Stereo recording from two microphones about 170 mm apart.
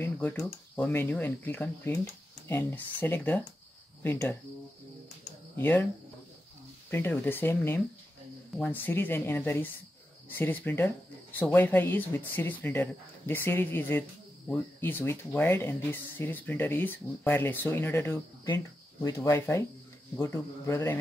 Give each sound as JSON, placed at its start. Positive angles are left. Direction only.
{"t": 0.0, "sound": "a sound", "side_deg": 10}
{"t": 0.7, "sound": "speech", "side_deg": 10}
{"t": 5.6, "sound": "speech", "side_deg": 10}
{"t": 6.9, "sound": "speech", "side_deg": 10}